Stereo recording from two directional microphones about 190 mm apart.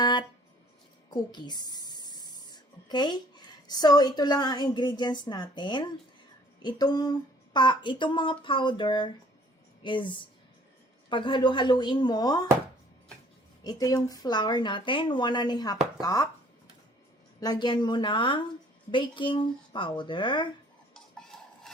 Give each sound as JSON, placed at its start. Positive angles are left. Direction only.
{"t": 0.0, "sound": "music", "side_deg": 25}
{"t": 1.1, "sound": "speech", "side_deg": 20}
{"t": 13.7, "sound": "speech", "side_deg": 20}
{"t": 17.4, "sound": "speech", "side_deg": 20}
{"t": 20.9, "sound": "a sound", "side_deg": 5}